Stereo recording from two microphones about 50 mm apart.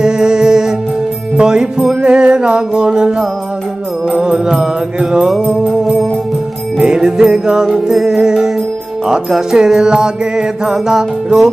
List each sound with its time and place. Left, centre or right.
0.0 s music: centre
6.8 s music: centre